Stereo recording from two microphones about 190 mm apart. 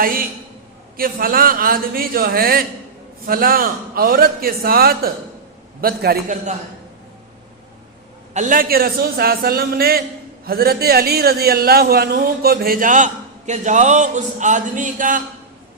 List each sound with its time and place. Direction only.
0.0 s a man's voice: 50° right (ahead or behind)
6.2 s a man's voice: 40° right (ahead or behind)
8.3 s a man's voice: 40° right (ahead or behind)